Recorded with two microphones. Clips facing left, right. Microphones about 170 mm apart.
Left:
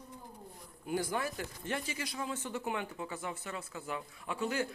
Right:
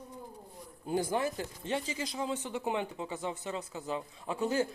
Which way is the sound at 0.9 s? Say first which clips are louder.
Right 4 dB; 20° right (ahead or behind).